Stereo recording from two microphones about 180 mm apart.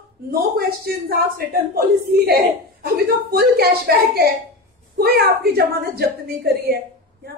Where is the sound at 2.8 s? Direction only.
55° right (ahead or behind).